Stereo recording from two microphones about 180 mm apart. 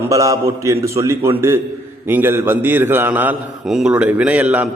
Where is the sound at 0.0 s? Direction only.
20° right (ahead or behind).